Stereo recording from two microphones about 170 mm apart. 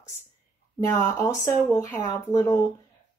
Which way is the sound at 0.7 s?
15° left (ahead or behind).